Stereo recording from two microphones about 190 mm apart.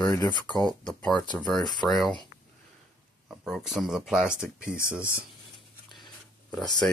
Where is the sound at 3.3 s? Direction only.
Centre (ahead or behind).